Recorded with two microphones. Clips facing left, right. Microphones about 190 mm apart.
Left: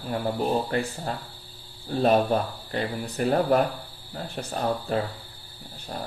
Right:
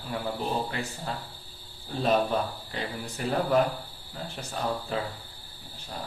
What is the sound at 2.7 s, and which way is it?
Speech, 55° left (ahead or behind).